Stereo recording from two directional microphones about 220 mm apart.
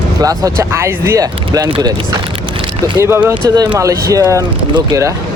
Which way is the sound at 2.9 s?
10° right (ahead or behind).